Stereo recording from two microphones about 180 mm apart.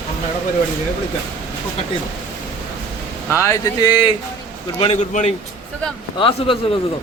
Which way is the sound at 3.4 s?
20° left (ahead or behind).